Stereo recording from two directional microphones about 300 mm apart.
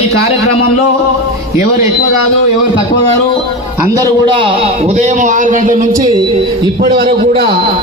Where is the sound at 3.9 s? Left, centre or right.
Centre.